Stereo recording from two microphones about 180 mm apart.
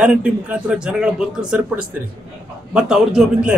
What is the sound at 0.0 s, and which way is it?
Speech, 5° right (ahead or behind).